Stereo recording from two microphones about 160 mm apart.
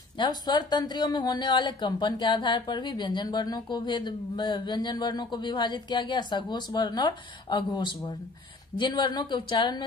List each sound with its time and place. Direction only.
0.2 s a man's voice: 25° left (ahead or behind)